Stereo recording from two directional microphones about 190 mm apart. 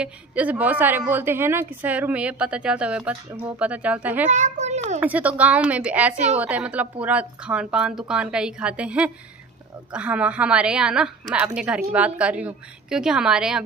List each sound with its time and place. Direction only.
0.0 s a woman's voice: 5° right (ahead or behind)
4.3 s a woman's voice: 40° right (ahead or behind)
5.0 s a woman's voice: 10° right (ahead or behind)